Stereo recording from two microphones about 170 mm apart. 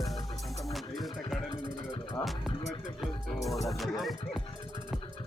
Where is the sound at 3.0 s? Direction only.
Centre (ahead or behind).